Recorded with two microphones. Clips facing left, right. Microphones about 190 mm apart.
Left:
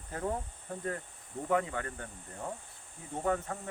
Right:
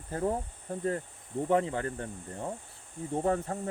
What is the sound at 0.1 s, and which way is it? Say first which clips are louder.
Speech: right 5 dB; 30° right (ahead or behind).